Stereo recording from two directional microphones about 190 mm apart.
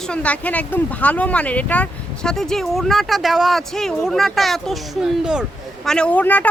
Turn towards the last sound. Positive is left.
turn(degrees=10)  # may be behind; listen again after turning